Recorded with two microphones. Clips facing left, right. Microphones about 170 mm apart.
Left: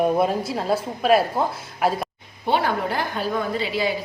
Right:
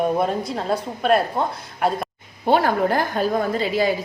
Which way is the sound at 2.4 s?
45° right (ahead or behind).